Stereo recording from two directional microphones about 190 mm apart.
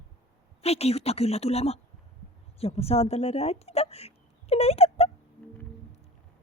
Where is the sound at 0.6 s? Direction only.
35° left (ahead or behind).